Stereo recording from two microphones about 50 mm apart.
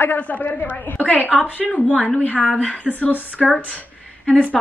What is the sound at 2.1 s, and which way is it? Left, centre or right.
A woman's voice, left.